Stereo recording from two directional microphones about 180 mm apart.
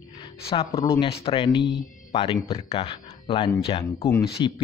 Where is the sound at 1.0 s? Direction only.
30° left (ahead or behind).